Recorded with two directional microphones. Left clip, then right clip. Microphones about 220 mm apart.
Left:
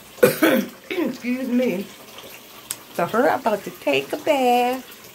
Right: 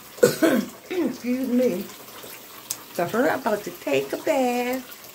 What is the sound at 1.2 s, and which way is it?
Speech, 20° left (ahead or behind).